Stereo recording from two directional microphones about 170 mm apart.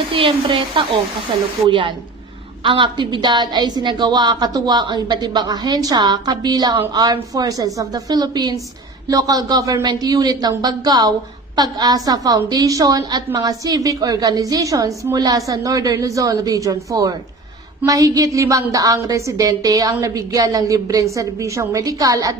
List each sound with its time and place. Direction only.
0.1 s a man's voice: 30° right (ahead or behind)